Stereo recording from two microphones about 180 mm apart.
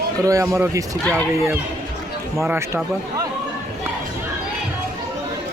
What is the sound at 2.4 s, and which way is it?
Speech, 10° right (ahead or behind).